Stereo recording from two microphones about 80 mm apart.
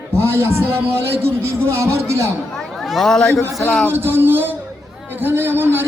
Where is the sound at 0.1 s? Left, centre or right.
Right.